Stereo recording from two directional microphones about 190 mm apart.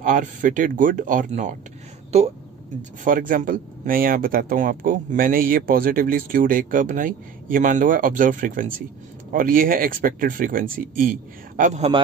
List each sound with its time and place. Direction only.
0.0 s speech: 45° right (ahead or behind)
3.0 s speech: 45° right (ahead or behind)